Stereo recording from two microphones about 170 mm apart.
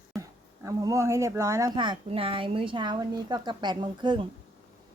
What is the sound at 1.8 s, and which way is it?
A woman's voice, 30° right (ahead or behind).